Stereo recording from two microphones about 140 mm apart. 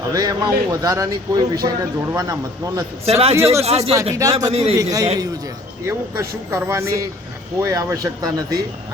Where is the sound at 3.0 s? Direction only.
45° right (ahead or behind).